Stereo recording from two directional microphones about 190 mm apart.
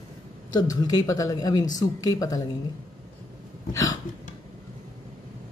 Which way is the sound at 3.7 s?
20° left (ahead or behind).